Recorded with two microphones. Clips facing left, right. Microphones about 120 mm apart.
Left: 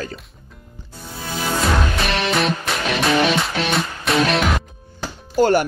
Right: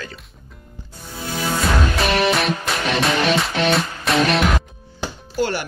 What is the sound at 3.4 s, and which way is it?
Music, centre (ahead or behind).